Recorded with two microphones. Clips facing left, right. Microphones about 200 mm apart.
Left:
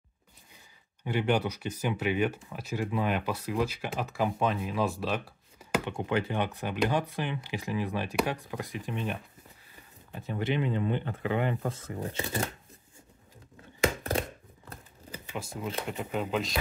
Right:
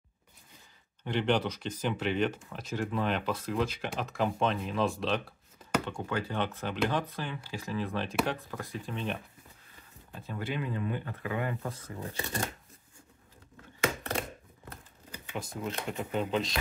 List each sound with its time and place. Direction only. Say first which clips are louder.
1.0 s speech: left 1 dB; 10° left (ahead or behind)
5.9 s speech: left 4 dB; 20° left (ahead or behind)
10.1 s speech: left 5 dB; 20° left (ahead or behind)
15.3 s speech: left 1 dB; 5° left (ahead or behind)